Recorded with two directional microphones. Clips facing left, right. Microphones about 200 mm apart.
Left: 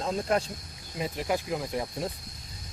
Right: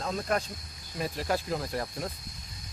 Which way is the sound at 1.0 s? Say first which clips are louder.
Left 1 dB; 15° left (ahead or behind).